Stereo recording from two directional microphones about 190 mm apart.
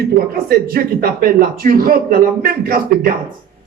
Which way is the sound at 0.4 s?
55° right (ahead or behind).